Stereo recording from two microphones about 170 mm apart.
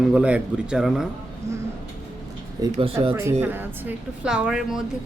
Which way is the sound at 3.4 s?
10° right (ahead or behind).